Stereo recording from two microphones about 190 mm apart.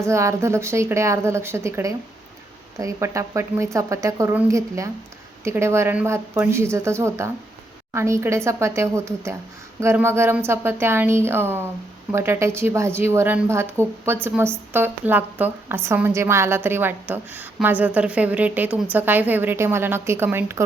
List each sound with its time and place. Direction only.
0.0 s speech: 15° right (ahead or behind)